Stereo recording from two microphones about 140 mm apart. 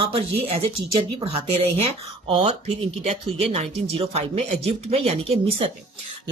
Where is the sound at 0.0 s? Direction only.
45° right (ahead or behind).